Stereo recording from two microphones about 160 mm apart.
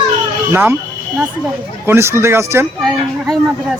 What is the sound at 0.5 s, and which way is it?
Speech, 10° right (ahead or behind).